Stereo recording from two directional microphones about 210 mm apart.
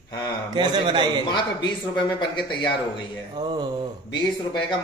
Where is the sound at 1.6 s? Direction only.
20° left (ahead or behind).